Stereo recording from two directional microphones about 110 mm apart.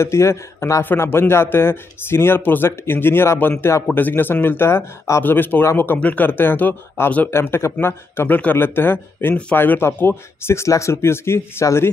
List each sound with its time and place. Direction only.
0.0 s speech: 25° left (ahead or behind)